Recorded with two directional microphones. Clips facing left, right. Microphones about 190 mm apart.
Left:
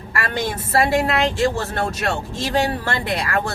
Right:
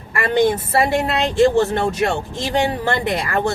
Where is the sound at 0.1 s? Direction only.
20° right (ahead or behind).